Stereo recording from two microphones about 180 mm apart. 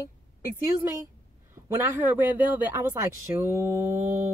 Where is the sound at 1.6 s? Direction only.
10° right (ahead or behind).